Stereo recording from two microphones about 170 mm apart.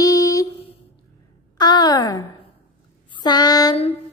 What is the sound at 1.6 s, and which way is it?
Speech, 25° left (ahead or behind).